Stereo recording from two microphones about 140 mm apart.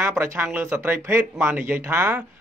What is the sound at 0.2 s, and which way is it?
A man's voice, 20° right (ahead or behind).